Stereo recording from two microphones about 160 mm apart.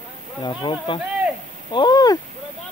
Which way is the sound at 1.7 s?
30° left (ahead or behind).